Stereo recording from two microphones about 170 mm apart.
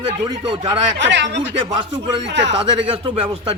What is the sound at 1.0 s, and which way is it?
Speech, 90° right.